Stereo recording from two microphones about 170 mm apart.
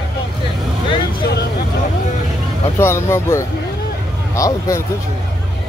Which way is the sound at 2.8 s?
15° left (ahead or behind).